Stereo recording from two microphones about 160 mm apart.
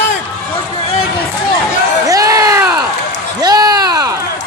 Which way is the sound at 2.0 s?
20° right (ahead or behind).